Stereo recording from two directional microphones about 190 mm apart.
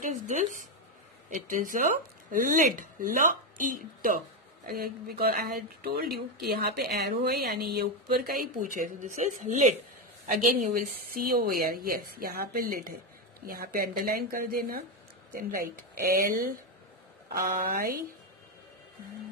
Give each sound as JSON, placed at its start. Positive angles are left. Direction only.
{"t": 0.0, "sound": "a woman's voice", "side_deg": -40}